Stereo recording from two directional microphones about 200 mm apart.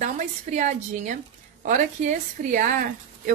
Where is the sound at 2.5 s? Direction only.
45° right (ahead or behind).